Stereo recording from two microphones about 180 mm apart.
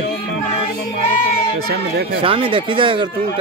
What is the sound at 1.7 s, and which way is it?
Speech, 60° right (ahead or behind).